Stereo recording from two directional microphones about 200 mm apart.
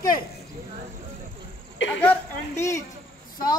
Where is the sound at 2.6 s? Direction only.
15° left (ahead or behind).